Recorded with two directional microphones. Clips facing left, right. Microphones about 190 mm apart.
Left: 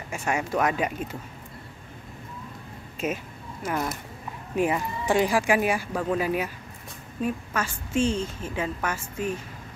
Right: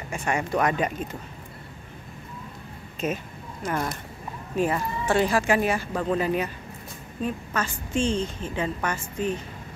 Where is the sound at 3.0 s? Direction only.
5° left (ahead or behind).